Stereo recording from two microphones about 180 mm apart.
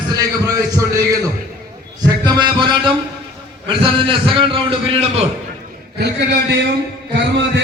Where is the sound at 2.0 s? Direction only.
25° right (ahead or behind).